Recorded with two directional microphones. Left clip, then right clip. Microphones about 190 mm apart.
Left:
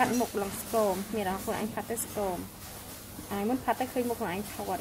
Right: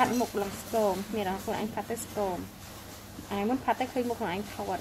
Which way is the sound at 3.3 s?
Centre (ahead or behind).